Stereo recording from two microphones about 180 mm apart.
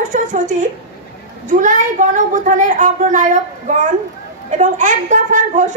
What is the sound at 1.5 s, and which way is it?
Speech, 45° right (ahead or behind).